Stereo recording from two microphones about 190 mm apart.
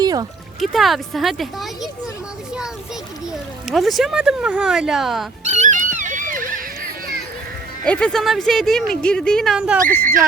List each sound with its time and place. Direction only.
0.0 s music: 20° right (ahead or behind)
0.6 s speech: centre (ahead or behind)
3.7 s speech: centre (ahead or behind)
5.5 s wail: 40° right (ahead or behind)
7.9 s speech: 5° left (ahead or behind)